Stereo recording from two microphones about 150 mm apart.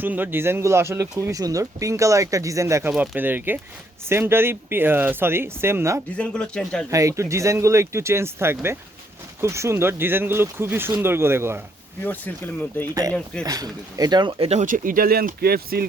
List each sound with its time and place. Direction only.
0.0 s speech: 10° right (ahead or behind)
2.9 s speech: 5° right (ahead or behind)
6.1 s speech: 5° left (ahead or behind)
6.9 s speech: 20° right (ahead or behind)
12.0 s speech: 10° left (ahead or behind)
12.9 s speech: 20° right (ahead or behind); by 14.6 s 40° right (ahead or behind)
14.6 s speech: 65° right (ahead or behind); by 15.9 s 90° right